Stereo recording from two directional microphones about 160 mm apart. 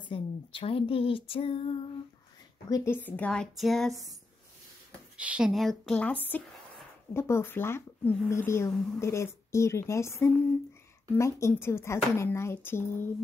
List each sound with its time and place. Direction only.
0.1 s speech: 35° left (ahead or behind)
2.7 s speech: 15° left (ahead or behind)
5.1 s a woman's voice: 5° right (ahead or behind)
7.2 s speech: 15° left (ahead or behind)